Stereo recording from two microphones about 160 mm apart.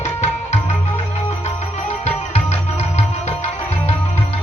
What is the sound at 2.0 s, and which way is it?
Music, 40° left (ahead or behind).